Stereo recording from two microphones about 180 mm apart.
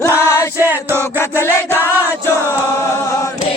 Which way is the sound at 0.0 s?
15° left (ahead or behind).